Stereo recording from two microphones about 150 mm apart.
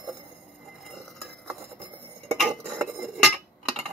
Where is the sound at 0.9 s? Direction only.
Centre (ahead or behind).